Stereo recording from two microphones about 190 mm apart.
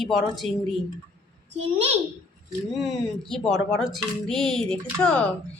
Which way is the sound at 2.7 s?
Centre (ahead or behind).